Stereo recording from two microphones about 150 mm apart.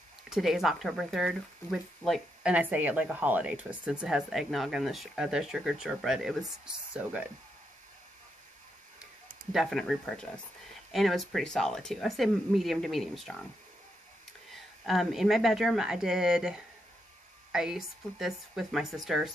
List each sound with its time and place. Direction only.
0.3 s speech: centre (ahead or behind)
9.5 s speech: centre (ahead or behind)
14.5 s speech: centre (ahead or behind)